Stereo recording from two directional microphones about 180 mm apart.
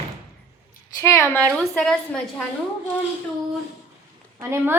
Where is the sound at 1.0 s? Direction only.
15° left (ahead or behind).